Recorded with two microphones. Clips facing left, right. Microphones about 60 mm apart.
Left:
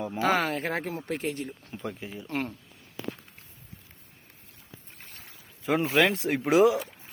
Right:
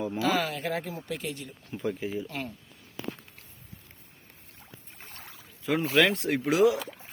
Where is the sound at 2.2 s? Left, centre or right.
Left.